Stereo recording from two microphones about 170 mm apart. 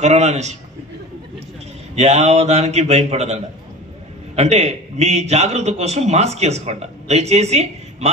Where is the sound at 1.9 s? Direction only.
40° right (ahead or behind).